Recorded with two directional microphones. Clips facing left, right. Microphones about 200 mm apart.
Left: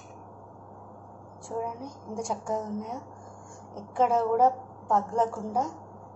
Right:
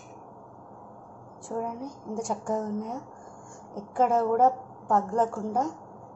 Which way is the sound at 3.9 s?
Centre (ahead or behind).